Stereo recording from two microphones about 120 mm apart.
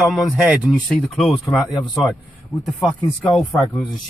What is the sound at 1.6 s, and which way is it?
Speech, 35° left (ahead or behind).